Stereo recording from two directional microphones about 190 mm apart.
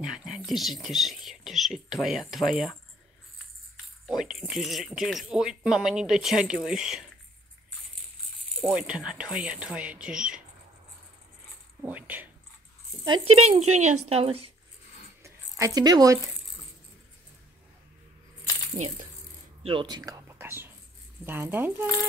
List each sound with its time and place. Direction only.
0.0 s speech: 5° right (ahead or behind)
3.7 s speech: centre (ahead or behind)
8.5 s speech: 5° right (ahead or behind)
11.8 s speech: 10° right (ahead or behind)
13.0 s speech: 30° right (ahead or behind)
15.2 s a sound: 15° right (ahead or behind)
19.6 s speech: 25° right (ahead or behind)
20.0 s whispering: 15° right (ahead or behind)
21.3 s speech: 10° right (ahead or behind)